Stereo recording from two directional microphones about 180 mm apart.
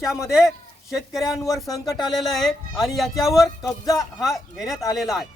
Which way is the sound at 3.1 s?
20° left (ahead or behind).